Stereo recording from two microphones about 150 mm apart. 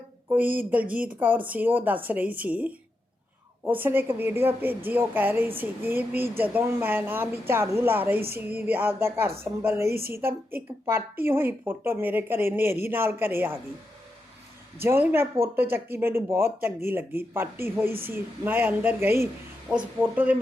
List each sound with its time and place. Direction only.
0.3 s a woman's voice: 10° right (ahead or behind)
14.8 s a woman's voice: 15° right (ahead or behind)